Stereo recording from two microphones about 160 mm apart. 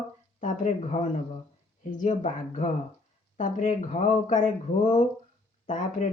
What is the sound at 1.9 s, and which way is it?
Speech, 50° left (ahead or behind).